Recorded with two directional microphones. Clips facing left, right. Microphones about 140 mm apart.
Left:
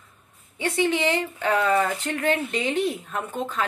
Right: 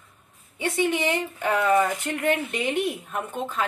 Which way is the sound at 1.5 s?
15° right (ahead or behind).